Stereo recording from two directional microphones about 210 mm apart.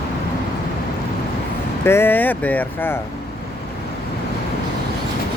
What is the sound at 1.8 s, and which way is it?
Speech, 10° left (ahead or behind).